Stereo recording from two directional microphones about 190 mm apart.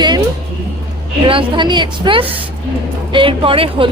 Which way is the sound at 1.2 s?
25° right (ahead or behind).